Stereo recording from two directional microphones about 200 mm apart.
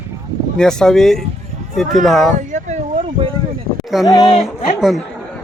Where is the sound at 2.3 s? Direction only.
35° right (ahead or behind).